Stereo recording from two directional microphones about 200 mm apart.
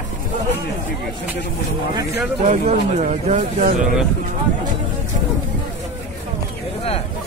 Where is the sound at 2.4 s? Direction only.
35° right (ahead or behind).